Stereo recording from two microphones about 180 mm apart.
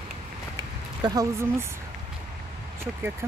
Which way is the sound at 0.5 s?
20° right (ahead or behind).